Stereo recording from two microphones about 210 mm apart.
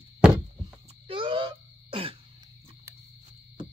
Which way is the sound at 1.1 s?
25° right (ahead or behind).